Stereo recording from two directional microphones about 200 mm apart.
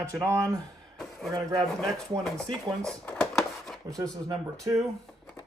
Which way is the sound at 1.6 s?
Centre (ahead or behind).